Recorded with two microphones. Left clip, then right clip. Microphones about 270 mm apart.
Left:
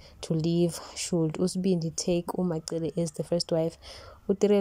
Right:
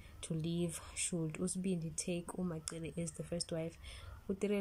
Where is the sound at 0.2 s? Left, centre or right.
Left.